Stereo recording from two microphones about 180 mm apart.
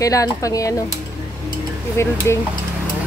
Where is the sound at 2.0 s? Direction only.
15° left (ahead or behind).